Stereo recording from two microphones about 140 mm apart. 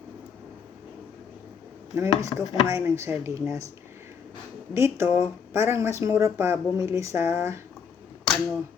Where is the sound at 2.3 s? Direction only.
35° left (ahead or behind).